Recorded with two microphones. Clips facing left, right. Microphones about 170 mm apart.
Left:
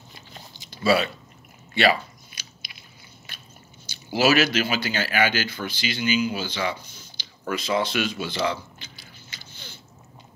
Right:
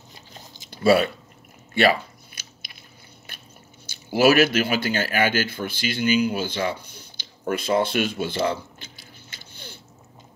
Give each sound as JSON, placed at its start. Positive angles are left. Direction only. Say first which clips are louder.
{"t": 0.5, "sound": "chewing", "louder": "right 4 dB", "side_deg": -50}
{"t": 1.7, "sound": "a sound", "louder": "right 2 dB", "side_deg": -50}
{"t": 3.8, "sound": "speech", "louder": "right 4 dB", "side_deg": -55}